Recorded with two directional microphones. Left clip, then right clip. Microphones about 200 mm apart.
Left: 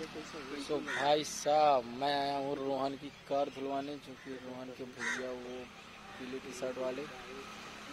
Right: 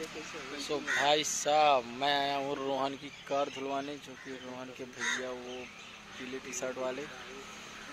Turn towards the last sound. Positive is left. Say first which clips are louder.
# right 2 dB
turn(degrees=-10)  # may be behind; listen again after turning